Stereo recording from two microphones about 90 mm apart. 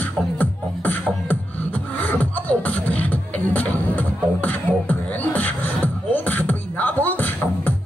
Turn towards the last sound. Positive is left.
turn(degrees=20)  # may be behind; listen again after turning